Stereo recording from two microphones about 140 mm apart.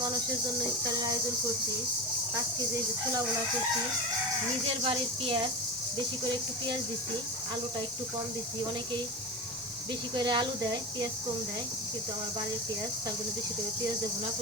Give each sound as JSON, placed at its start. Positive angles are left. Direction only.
{"t": 4.8, "sound": "speech", "side_deg": -40}
{"t": 10.2, "sound": "speech", "side_deg": -30}